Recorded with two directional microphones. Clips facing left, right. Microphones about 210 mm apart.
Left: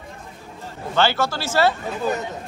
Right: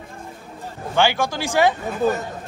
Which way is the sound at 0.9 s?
15° right (ahead or behind).